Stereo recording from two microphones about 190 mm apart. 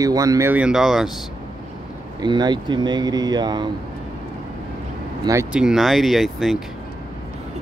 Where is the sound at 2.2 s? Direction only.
25° right (ahead or behind).